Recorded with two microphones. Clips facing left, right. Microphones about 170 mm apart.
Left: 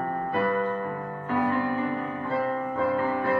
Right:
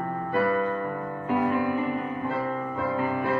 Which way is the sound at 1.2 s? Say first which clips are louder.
Right 1 dB; 15° right (ahead or behind).